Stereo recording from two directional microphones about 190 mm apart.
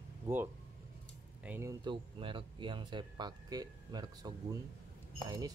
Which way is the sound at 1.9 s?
25° right (ahead or behind).